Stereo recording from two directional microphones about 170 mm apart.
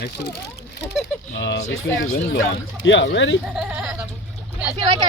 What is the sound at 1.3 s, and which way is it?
Speech, 90° left.